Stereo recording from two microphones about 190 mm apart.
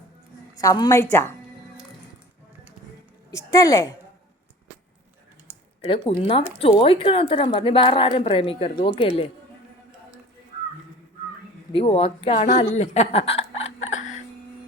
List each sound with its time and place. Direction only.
0.5 s a woman's voice: 20° left (ahead or behind)
3.3 s a woman's voice: 15° left (ahead or behind)
5.9 s a woman's voice: 30° left (ahead or behind)
11.7 s speech: 30° left (ahead or behind)
13.8 s a sound: 40° left (ahead or behind)